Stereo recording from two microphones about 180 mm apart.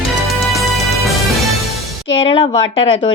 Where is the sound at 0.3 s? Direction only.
Centre (ahead or behind).